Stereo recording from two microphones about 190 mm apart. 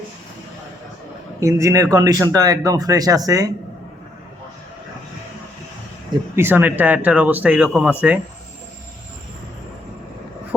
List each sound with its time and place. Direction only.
1.4 s speech: 15° right (ahead or behind)
6.3 s speech: 10° right (ahead or behind)